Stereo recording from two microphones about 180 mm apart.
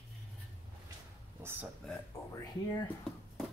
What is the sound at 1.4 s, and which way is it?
Speech, 10° right (ahead or behind).